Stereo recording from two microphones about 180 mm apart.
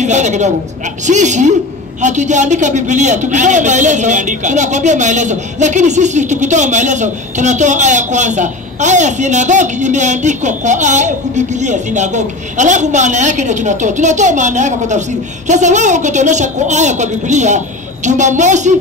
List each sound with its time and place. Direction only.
0.0 s a woman's voice: 40° right (ahead or behind)